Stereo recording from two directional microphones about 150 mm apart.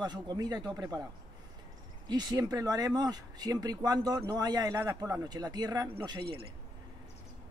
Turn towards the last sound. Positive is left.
turn(degrees=-35)  # may be behind; listen again after turning